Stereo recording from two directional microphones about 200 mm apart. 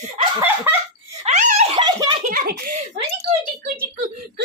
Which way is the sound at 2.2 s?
45° right (ahead or behind).